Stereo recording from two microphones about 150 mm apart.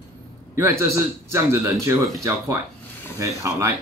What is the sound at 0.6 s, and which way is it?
A man's voice, 15° right (ahead or behind).